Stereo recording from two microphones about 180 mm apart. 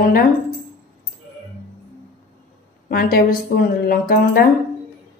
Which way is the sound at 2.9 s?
55° left (ahead or behind).